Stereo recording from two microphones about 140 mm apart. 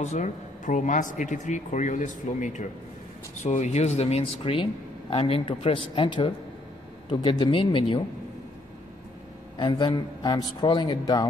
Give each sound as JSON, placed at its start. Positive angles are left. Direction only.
{"t": 0.0, "sound": "speech", "side_deg": 60}
{"t": 9.6, "sound": "speech", "side_deg": 35}